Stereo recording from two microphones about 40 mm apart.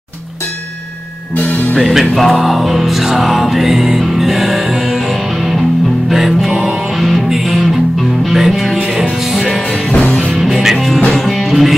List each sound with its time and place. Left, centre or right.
1.3 s music: left
1.8 s music: centre
9.8 s music: left
10.3 s music: centre
11.1 s music: centre